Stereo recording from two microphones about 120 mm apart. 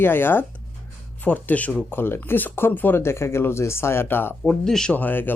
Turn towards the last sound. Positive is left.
turn(degrees=15)  # may be behind; listen again after turning